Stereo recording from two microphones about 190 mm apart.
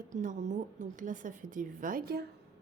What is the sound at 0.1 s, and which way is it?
A woman's voice, 40° right (ahead or behind).